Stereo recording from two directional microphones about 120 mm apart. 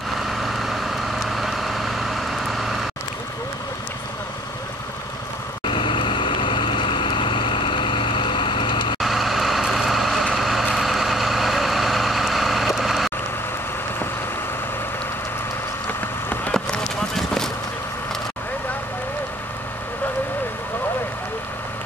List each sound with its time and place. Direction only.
0.2 s vehicle: centre (ahead or behind)
5.7 s vehicle: 45° left (ahead or behind)
9.0 s vehicle: centre (ahead or behind)
16.0 s vehicle: 15° left (ahead or behind)